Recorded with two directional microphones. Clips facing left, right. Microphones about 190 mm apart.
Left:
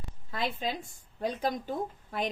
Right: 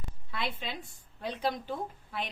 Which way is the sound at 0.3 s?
40° left (ahead or behind).